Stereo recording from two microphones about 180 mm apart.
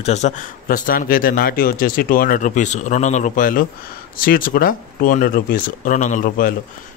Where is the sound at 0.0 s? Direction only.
40° left (ahead or behind).